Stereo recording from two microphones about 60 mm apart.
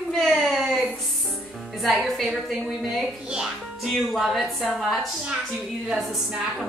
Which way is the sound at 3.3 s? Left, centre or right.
Centre.